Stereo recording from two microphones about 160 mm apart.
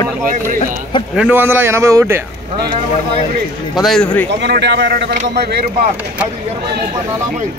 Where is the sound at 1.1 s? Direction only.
10° right (ahead or behind).